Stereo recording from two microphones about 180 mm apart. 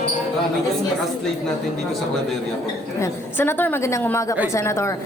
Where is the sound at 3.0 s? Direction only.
10° left (ahead or behind).